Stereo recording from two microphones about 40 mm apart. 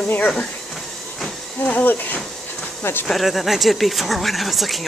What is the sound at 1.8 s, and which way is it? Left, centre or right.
Speech, left.